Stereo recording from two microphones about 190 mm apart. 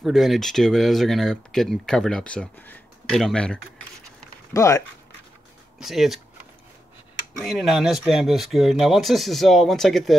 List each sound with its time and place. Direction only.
0.0 s speech: centre (ahead or behind)
4.6 s speech: 15° left (ahead or behind)
5.8 s speech: centre (ahead or behind)
7.3 s speech: centre (ahead or behind)